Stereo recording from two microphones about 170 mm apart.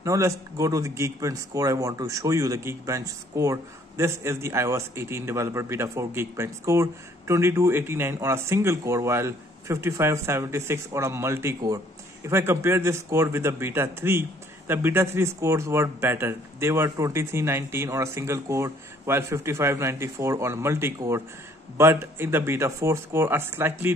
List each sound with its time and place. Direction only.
0.0 s speech: 15° right (ahead or behind)